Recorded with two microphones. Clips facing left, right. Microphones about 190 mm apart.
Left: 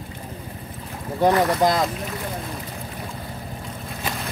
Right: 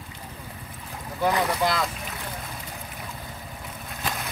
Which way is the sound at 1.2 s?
40° left (ahead or behind).